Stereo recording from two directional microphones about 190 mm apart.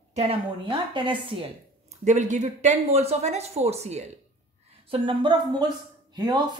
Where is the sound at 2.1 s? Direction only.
40° right (ahead or behind).